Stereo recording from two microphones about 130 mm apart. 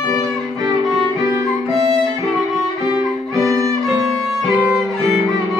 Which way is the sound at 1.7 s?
40° right (ahead or behind).